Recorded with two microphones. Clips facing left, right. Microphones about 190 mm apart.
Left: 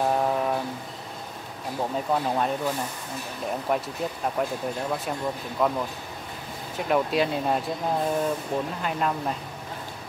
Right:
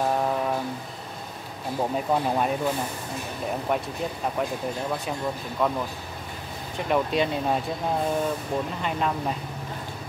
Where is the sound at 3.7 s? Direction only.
Centre (ahead or behind).